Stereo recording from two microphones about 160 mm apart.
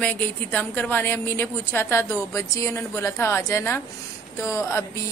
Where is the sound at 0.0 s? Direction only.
10° left (ahead or behind).